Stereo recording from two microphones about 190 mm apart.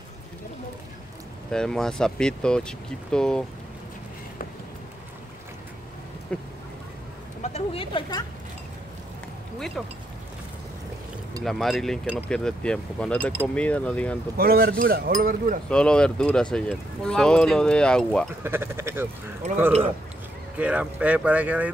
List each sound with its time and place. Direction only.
1.5 s speech: 5° left (ahead or behind)
6.3 s speech: 5° left (ahead or behind)
7.4 s speech: 30° left (ahead or behind)
9.8 s speech: centre (ahead or behind)
11.4 s speech: centre (ahead or behind)
14.3 s speech: 50° right (ahead or behind)
15.7 s speech: 5° left (ahead or behind)
18.4 s speech: 10° right (ahead or behind)
20.5 s speech: 5° right (ahead or behind)